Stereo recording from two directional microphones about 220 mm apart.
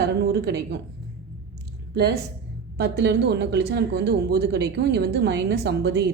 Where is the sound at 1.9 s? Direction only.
50° right (ahead or behind).